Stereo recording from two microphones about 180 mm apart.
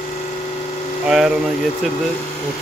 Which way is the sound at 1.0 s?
5° right (ahead or behind).